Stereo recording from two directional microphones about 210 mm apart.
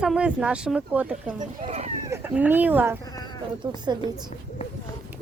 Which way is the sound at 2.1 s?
10° right (ahead or behind).